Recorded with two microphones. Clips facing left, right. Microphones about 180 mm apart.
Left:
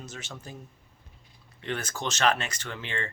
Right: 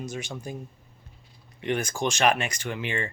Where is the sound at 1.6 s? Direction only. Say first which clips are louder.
Right 6 dB; 15° right (ahead or behind).